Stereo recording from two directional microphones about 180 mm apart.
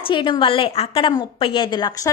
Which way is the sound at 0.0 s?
25° left (ahead or behind).